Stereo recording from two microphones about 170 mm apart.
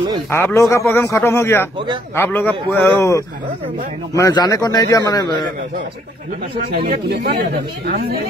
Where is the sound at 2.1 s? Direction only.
15° left (ahead or behind).